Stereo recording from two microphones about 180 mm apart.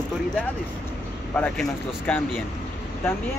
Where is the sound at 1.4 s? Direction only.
10° left (ahead or behind).